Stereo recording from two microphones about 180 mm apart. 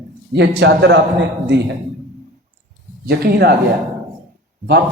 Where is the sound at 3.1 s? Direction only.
60° right (ahead or behind).